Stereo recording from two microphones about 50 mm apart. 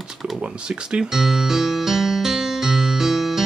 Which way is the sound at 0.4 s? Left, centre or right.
Right.